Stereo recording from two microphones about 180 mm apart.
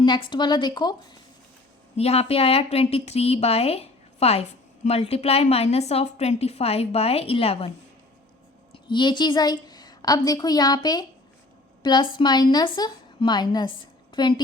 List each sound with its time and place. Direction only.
0.0 s speech: 25° left (ahead or behind)
2.0 s a woman's voice: 35° left (ahead or behind)
8.7 s a woman's voice: 25° left (ahead or behind)